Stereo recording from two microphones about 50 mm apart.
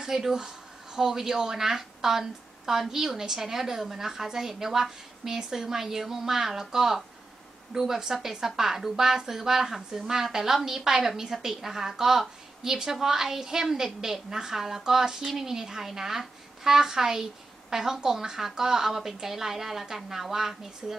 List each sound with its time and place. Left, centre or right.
0.0 s a woman's voice: centre